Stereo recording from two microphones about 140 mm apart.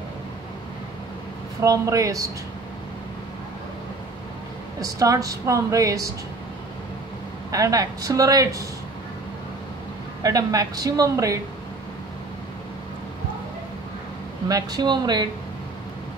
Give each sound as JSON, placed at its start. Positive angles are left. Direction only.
{"t": 1.6, "sound": "a woman's voice", "side_deg": -25}
{"t": 4.7, "sound": "a woman's voice", "side_deg": -25}
{"t": 7.5, "sound": "a woman's voice", "side_deg": -25}
{"t": 10.2, "sound": "a woman's voice", "side_deg": -25}
{"t": 14.5, "sound": "a woman's voice", "side_deg": -30}